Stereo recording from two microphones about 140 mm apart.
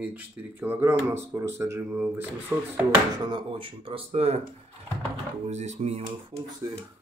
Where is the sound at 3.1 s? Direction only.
35° right (ahead or behind).